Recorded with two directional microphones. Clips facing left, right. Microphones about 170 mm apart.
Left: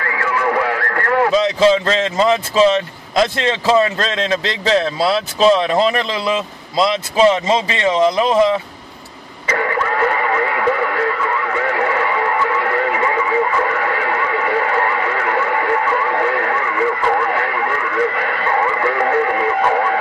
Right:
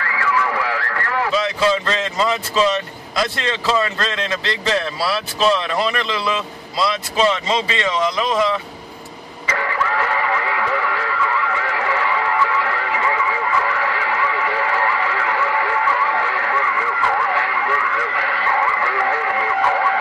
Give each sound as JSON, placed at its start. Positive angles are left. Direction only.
{"t": 0.1, "sound": "radio", "side_deg": 45}
{"t": 1.3, "sound": "speech", "side_deg": 25}
{"t": 4.9, "sound": "speech", "side_deg": 20}
{"t": 9.7, "sound": "radio", "side_deg": 50}